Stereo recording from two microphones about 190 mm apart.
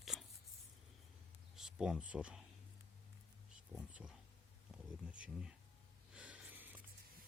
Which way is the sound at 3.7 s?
5° right (ahead or behind).